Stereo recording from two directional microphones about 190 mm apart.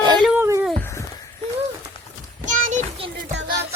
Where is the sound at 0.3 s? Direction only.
15° right (ahead or behind).